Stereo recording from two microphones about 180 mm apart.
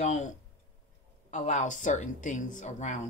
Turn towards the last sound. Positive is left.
turn(degrees=40)  # may be behind; listen again after turning